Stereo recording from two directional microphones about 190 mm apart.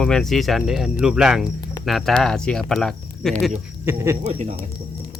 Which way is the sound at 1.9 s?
Centre (ahead or behind).